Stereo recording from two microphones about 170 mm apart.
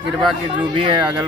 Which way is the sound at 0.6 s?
30° right (ahead or behind).